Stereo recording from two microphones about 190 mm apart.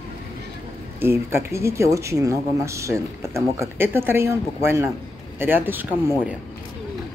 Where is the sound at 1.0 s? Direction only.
15° right (ahead or behind).